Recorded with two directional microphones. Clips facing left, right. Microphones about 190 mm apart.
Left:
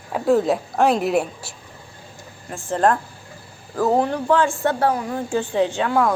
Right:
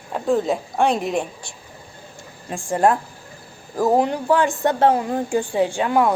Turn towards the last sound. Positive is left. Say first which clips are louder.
# right 1 dB
turn(degrees=-15)  # may be behind; listen again after turning